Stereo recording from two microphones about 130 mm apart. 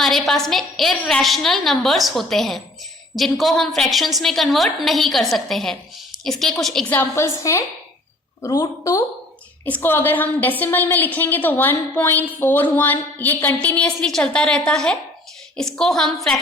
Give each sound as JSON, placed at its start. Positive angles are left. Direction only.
{"t": 0.0, "sound": "a woman's voice", "side_deg": 0}
{"t": 7.5, "sound": "a woman's voice", "side_deg": 25}